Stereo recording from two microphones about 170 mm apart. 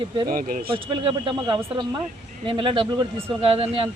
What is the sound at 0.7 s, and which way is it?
Speech, 30° right (ahead or behind).